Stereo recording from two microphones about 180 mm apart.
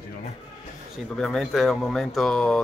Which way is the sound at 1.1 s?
Centre (ahead or behind).